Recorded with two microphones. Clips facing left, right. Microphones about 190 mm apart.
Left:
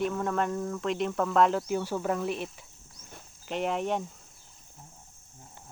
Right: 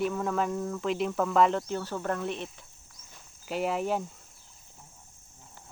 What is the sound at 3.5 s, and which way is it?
Speech, 5° right (ahead or behind).